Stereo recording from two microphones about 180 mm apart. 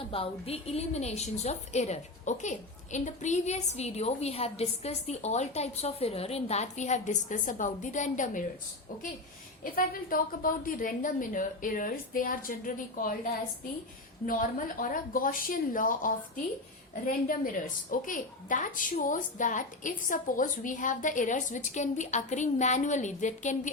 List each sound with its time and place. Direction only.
0.1 s a woman's voice: 30° left (ahead or behind)
9.6 s a woman's voice: 50° left (ahead or behind)
14.3 s a woman's voice: 50° left (ahead or behind)